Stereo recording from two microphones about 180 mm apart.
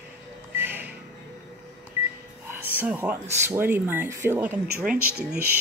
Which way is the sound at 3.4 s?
15° right (ahead or behind).